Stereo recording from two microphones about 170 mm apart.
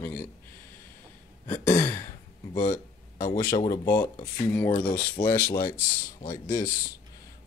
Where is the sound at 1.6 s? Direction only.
20° left (ahead or behind).